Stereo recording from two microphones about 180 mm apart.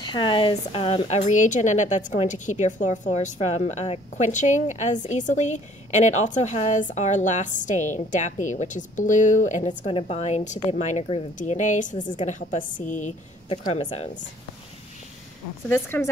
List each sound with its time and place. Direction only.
0.0 s a woman's voice: 25° left (ahead or behind); by 9.7 s 45° left (ahead or behind)
9.7 s a woman's voice: 30° left (ahead or behind)
13.8 s speech: 30° left (ahead or behind)
15.7 s speech: 10° left (ahead or behind)